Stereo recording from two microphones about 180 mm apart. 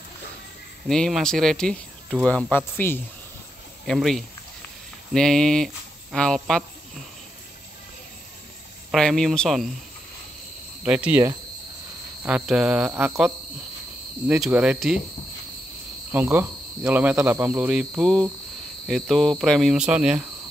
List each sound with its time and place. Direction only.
0.8 s cricket: 5° left (ahead or behind)
2.2 s speech: 10° left (ahead or behind)
3.8 s cricket: centre (ahead or behind)
8.9 s cricket: 5° left (ahead or behind)
10.8 s speech: 5° right (ahead or behind)
12.3 s cricket: 5° right (ahead or behind)
14.2 s speech: 10° right (ahead or behind)
16.1 s speech: 10° right (ahead or behind)
18.9 s cricket: centre (ahead or behind)